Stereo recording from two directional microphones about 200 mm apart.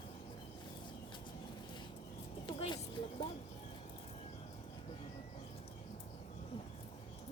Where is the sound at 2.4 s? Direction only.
25° left (ahead or behind).